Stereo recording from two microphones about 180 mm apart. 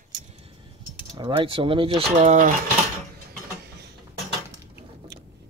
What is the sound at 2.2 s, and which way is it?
Speech, 40° right (ahead or behind).